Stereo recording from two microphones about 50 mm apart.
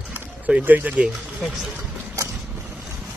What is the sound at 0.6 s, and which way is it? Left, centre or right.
Speech, right.